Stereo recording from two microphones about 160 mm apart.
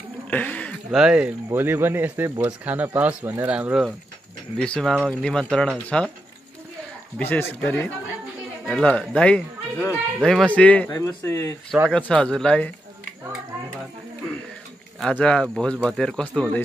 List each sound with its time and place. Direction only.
0.3 s a sound: 10° left (ahead or behind)
0.9 s speech: 5° right (ahead or behind)
7.2 s speech: 15° left (ahead or behind)
10.9 s speech: 20° left (ahead or behind)
11.9 s speech: 5° left (ahead or behind)
15.0 s speech: 5° left (ahead or behind)